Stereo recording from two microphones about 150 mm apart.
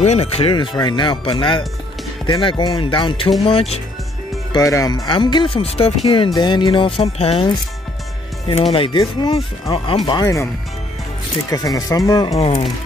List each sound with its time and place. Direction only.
0.0 s speech: 45° left (ahead or behind)
4.5 s speech: 20° left (ahead or behind); by 7.5 s 40° left (ahead or behind)
8.7 s speech: 35° left (ahead or behind)
10.2 s speech: 20° left (ahead or behind)
11.5 s speech: 25° left (ahead or behind)
12.4 s speech: 45° left (ahead or behind)